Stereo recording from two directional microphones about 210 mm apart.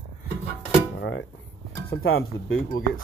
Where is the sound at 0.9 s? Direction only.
60° left (ahead or behind).